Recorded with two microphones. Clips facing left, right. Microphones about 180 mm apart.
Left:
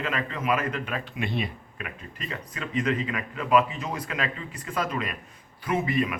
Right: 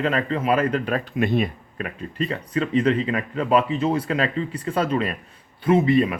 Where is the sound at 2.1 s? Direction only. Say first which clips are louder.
Right 14 dB; 30° right (ahead or behind).